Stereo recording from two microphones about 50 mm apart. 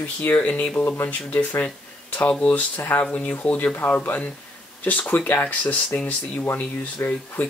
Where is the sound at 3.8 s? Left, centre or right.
Left.